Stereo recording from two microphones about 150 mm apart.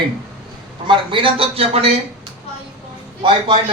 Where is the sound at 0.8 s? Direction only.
35° right (ahead or behind).